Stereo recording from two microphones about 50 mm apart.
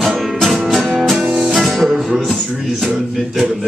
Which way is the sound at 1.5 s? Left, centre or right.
Centre.